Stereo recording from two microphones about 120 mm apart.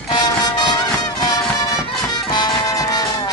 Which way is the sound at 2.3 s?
35° left (ahead or behind).